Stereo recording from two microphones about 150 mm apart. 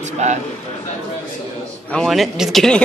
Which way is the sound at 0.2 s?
50° right (ahead or behind).